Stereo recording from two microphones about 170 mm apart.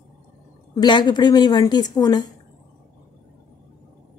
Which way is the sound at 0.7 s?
25° left (ahead or behind).